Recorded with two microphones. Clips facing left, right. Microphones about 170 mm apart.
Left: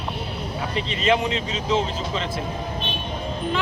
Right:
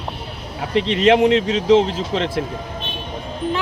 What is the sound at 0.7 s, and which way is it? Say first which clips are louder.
Speech: right 8 dB; 75° right (ahead or behind).